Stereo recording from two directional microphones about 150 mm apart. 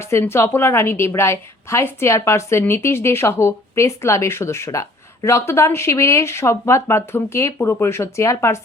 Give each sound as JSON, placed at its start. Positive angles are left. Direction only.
{"t": 0.0, "sound": "a woman's voice", "side_deg": 15}